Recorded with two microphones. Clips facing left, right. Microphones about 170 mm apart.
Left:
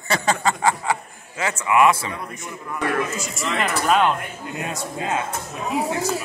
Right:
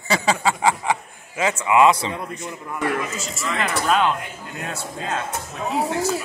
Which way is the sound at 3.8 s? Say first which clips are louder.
Left 1 dB; centre (ahead or behind).